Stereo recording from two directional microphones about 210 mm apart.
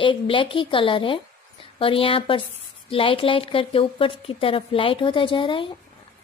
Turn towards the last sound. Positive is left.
turn(degrees=25)  # may be behind; listen again after turning